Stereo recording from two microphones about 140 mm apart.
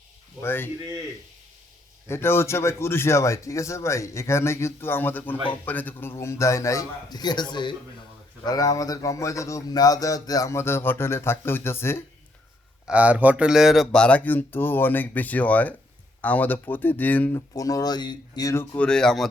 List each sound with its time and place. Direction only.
0.4 s speech: 15° left (ahead or behind)
2.0 s a man's voice: 15° left (ahead or behind)
12.9 s speech: 10° right (ahead or behind); by 17.4 s 10° left (ahead or behind)
17.5 s speech: 25° left (ahead or behind)
18.9 s speech: 5° left (ahead or behind)